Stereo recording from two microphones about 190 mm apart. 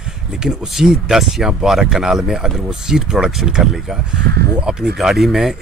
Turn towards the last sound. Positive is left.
turn(degrees=0)  # may be behind; listen again after turning